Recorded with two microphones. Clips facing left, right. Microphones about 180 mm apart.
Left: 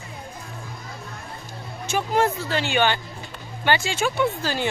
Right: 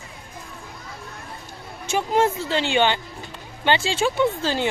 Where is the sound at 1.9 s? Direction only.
20° right (ahead or behind).